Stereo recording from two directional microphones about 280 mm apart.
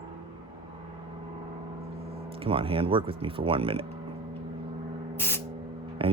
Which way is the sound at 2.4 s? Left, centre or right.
Centre.